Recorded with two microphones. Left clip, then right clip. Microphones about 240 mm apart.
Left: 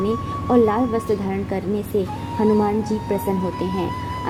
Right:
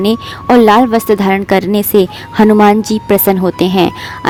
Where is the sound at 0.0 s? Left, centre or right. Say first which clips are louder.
Right 8 dB; right.